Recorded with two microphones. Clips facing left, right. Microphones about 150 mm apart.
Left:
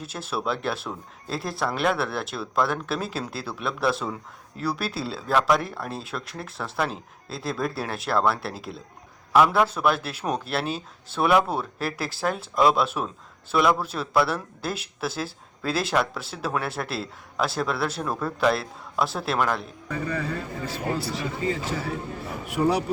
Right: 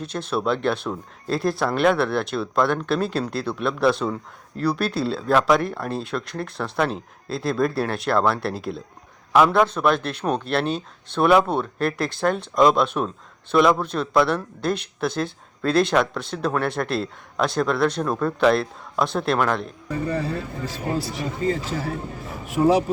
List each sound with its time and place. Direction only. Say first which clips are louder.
0.0 s speech: right 5 dB; 5° left (ahead or behind)
19.9 s speech: right 4 dB; 30° right (ahead or behind)
20.9 s speech: right 5 dB; 20° right (ahead or behind)
21.4 s speech: right 4 dB; 40° right (ahead or behind)